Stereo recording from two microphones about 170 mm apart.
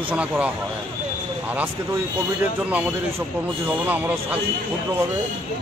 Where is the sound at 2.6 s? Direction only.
10° right (ahead or behind).